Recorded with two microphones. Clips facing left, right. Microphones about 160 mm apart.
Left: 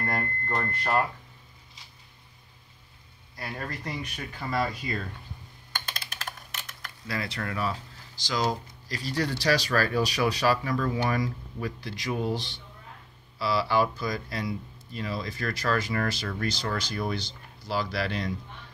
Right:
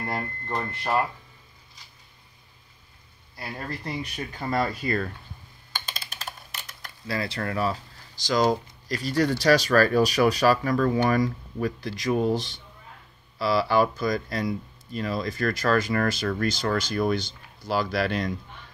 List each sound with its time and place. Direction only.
0.0 s a sound: 5° right (ahead or behind)
3.8 s speech: 40° right (ahead or behind)
4.8 s speech: 60° right (ahead or behind)
7.1 s speech: 30° right (ahead or behind); by 18.3 s 50° right (ahead or behind)